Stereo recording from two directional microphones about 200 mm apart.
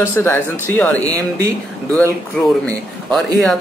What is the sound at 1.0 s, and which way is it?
Speech, 15° right (ahead or behind).